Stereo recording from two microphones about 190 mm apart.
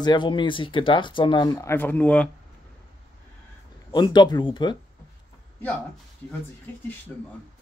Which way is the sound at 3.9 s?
20° left (ahead or behind).